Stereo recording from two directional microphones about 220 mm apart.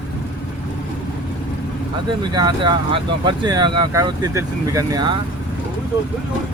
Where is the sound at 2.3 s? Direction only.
20° right (ahead or behind).